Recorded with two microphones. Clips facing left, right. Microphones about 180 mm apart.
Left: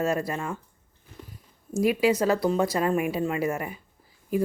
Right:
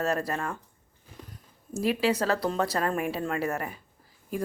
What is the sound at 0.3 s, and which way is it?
Speech, 10° left (ahead or behind).